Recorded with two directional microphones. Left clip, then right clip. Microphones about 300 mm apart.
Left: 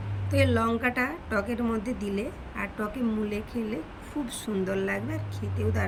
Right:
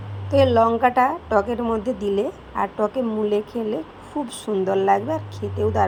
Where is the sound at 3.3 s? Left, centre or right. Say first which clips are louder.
Right 10 dB; centre.